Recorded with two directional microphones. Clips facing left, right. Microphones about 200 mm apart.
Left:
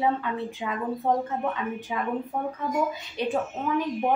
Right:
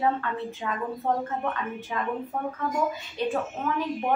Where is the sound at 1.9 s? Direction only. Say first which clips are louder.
Even; 10° left (ahead or behind).